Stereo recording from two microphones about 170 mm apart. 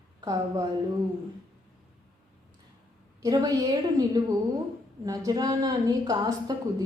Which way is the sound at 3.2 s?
20° right (ahead or behind).